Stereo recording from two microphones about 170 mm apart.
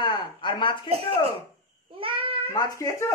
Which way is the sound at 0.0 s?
30° left (ahead or behind).